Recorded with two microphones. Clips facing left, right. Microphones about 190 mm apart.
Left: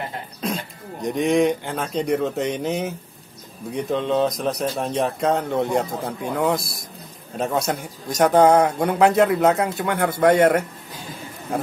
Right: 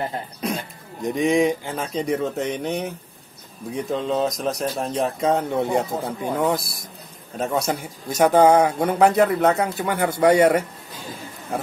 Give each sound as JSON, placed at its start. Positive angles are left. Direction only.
{"t": 1.0, "sound": "speech", "side_deg": 0}